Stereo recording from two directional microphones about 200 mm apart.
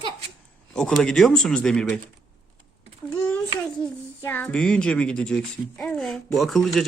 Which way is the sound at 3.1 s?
10° left (ahead or behind).